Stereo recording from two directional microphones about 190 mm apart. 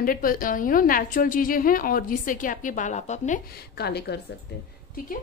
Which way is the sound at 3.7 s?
60° left (ahead or behind).